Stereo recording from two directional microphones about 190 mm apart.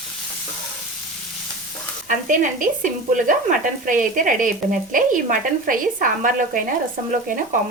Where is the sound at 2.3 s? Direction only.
45° right (ahead or behind).